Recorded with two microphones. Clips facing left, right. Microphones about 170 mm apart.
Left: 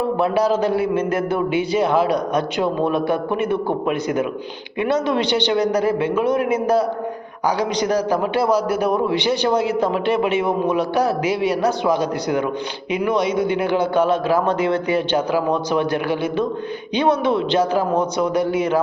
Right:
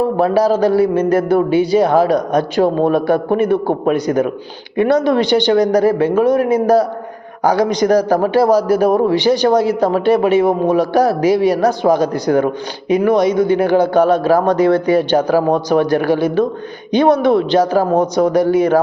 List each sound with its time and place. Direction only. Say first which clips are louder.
0.8 s a man's voice: right 6 dB; 35° right (ahead or behind)